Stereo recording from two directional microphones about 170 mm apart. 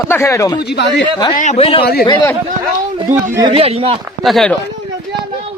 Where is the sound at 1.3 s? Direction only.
45° left (ahead or behind).